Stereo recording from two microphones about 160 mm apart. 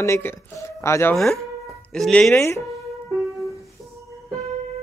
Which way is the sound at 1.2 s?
Centre (ahead or behind).